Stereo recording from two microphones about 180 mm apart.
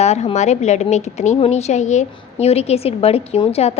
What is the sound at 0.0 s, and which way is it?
A woman's voice, 35° left (ahead or behind).